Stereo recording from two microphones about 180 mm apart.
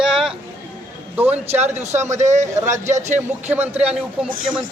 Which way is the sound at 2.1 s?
40° right (ahead or behind).